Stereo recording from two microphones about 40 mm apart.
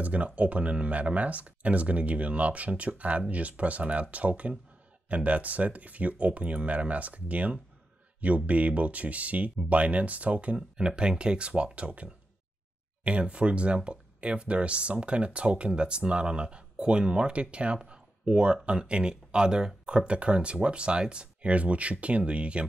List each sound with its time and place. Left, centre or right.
0.0 s speech: right
10.8 s speech: right